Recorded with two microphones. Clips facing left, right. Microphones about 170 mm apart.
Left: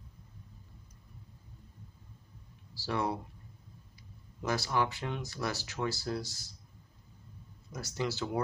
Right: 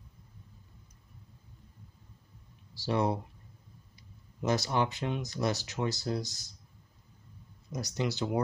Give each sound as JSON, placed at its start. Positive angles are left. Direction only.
{"t": 2.7, "sound": "speech", "side_deg": -20}
{"t": 4.4, "sound": "speech", "side_deg": -20}
{"t": 7.7, "sound": "speech", "side_deg": -20}